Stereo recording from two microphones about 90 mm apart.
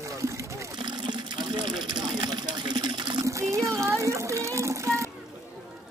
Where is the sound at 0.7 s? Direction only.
60° right (ahead or behind).